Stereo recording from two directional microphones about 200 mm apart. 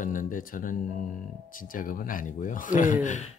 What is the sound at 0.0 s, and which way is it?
Speech, 40° left (ahead or behind).